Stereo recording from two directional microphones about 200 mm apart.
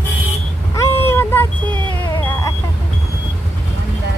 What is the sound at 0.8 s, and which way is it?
Vehicle, 10° left (ahead or behind).